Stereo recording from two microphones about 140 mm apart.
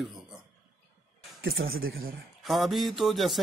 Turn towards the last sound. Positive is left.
turn(degrees=0)  # may be behind; listen again after turning